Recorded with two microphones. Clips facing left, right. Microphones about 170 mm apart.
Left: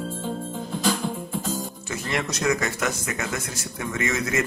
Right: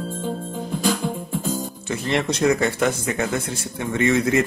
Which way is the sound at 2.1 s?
30° right (ahead or behind).